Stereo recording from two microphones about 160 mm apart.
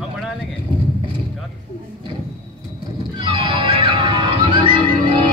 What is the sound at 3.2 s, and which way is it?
Music, 35° right (ahead or behind).